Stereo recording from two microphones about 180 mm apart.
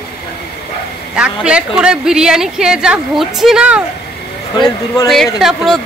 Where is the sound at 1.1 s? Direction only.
5° right (ahead or behind).